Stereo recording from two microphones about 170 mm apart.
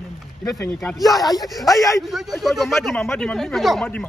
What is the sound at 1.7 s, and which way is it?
Speech, 20° left (ahead or behind).